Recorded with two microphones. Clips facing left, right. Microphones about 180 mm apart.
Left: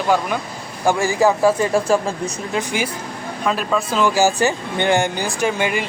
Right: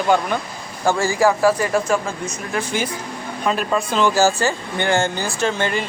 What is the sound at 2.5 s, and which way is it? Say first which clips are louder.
Speech: even; 15° left (ahead or behind).